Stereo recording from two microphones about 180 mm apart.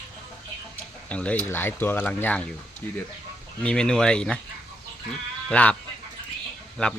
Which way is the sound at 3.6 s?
5° left (ahead or behind).